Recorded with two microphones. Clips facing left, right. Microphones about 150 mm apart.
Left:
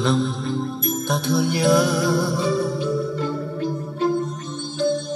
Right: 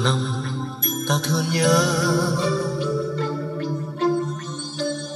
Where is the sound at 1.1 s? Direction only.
10° left (ahead or behind).